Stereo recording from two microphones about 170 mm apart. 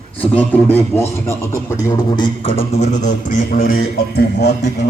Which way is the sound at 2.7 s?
45° left (ahead or behind).